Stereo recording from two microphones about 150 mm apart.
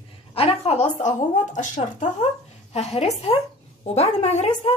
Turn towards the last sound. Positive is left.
turn(degrees=45)  # may be behind; listen again after turning